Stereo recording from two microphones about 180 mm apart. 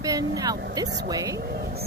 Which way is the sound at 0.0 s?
20° right (ahead or behind).